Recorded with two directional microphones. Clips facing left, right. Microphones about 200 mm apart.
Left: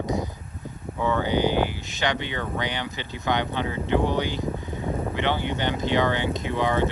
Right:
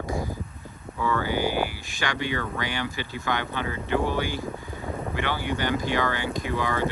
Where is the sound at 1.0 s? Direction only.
20° left (ahead or behind).